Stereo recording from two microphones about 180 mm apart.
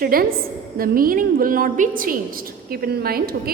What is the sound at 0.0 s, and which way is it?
A woman's voice, 55° right (ahead or behind).